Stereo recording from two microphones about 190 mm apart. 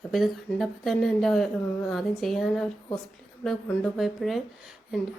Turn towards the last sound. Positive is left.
turn(degrees=0)  # may be behind; listen again after turning